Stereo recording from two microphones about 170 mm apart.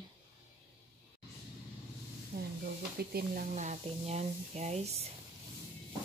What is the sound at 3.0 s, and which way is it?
Speech, 65° right (ahead or behind).